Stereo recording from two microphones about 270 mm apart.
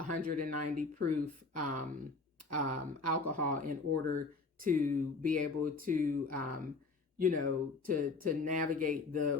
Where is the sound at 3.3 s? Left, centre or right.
Right.